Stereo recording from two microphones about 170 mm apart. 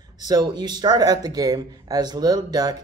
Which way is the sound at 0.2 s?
25° right (ahead or behind).